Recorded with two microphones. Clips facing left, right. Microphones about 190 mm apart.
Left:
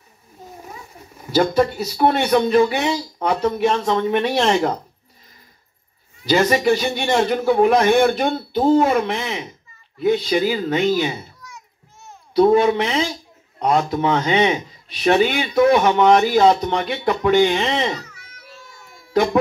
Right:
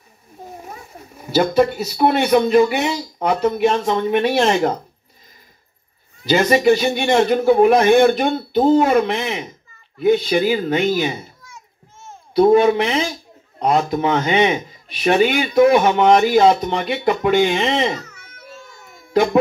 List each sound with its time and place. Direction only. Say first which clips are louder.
1.3 s speech: right 1 dB; 25° right (ahead or behind)
3.7 s speech: right 1 dB; 25° right (ahead or behind)
6.2 s a child's voice: right 2 dB; 20° right (ahead or behind)
17.9 s music: right 2 dB; 50° right (ahead or behind)